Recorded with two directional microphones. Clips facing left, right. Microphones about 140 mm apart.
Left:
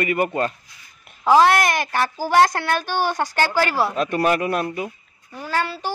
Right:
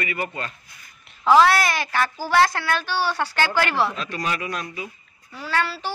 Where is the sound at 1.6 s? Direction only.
50° left (ahead or behind).